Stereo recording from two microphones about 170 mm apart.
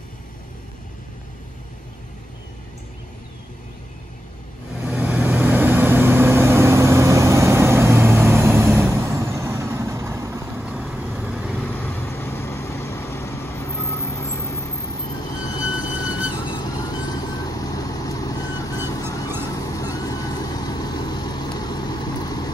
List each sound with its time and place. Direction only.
4.8 s vehicle: 10° right (ahead or behind)
11.6 s vehicle: 10° left (ahead or behind)
15.2 s train: 25° left (ahead or behind)
15.8 s vehicle: 5° right (ahead or behind)
16.4 s vehicle: 25° left (ahead or behind)